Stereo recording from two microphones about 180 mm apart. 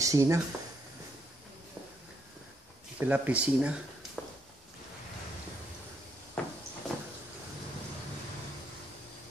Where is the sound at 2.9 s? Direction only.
10° right (ahead or behind).